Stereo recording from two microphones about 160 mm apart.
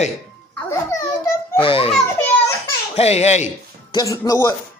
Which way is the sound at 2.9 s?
40° left (ahead or behind).